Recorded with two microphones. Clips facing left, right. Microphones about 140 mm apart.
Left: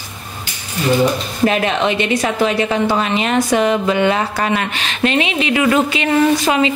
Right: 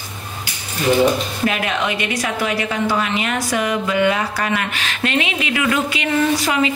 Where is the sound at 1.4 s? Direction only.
30° left (ahead or behind).